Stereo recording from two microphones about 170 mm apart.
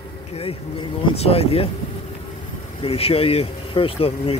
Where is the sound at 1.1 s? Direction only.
35° left (ahead or behind).